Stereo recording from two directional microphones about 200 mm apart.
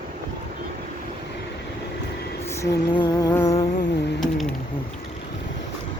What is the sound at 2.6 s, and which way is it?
Music, 20° left (ahead or behind).